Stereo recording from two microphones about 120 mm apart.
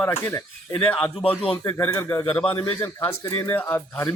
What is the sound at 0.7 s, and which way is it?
Speech, 10° left (ahead or behind).